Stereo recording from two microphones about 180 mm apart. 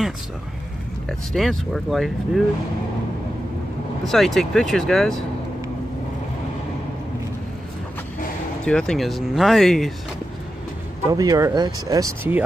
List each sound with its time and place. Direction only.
1.0 s speech: centre (ahead or behind)
4.1 s speech: centre (ahead or behind)
8.6 s speech: 5° left (ahead or behind)
11.1 s speech: 20° right (ahead or behind)